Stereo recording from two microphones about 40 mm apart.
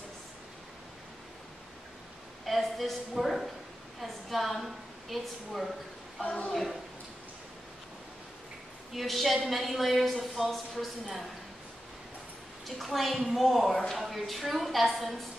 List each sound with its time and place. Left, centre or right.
2.4 s a woman's voice: centre
6.2 s a woman's voice: left
6.5 s a woman's voice: centre
8.9 s a woman's voice: centre
12.6 s a woman's voice: centre